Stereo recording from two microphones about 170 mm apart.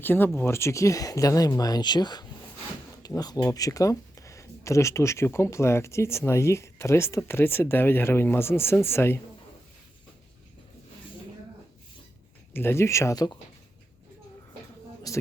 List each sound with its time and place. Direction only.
0.0 s speech: 10° left (ahead or behind)
12.5 s speech: 15° left (ahead or behind)
15.1 s speech: 20° left (ahead or behind)